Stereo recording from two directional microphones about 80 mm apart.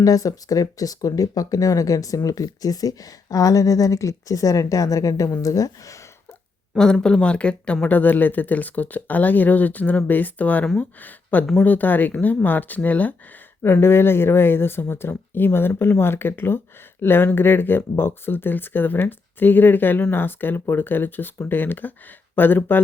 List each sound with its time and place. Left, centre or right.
0.0 s speech: left
7.0 s speech: centre
13.6 s speech: left